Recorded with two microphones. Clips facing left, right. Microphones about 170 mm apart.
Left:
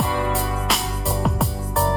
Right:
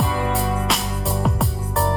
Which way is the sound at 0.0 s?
Centre (ahead or behind).